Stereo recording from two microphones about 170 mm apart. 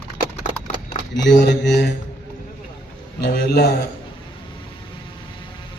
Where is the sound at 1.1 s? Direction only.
90° left.